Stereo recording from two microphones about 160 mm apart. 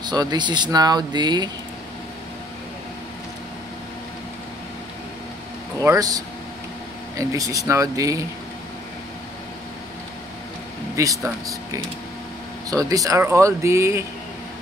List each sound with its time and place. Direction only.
0.0 s speech: 25° right (ahead or behind)
5.8 s speech: 20° right (ahead or behind)
11.0 s speech: 20° right (ahead or behind)